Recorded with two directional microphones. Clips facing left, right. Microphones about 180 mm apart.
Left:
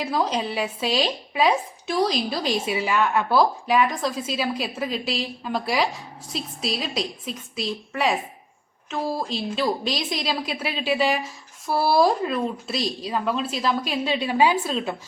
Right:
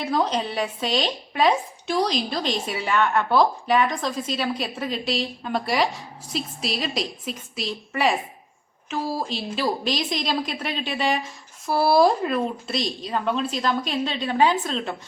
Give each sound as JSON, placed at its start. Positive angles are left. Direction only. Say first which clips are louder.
{"t": 0.0, "sound": "speech", "louder": "right 1 dB", "side_deg": 5}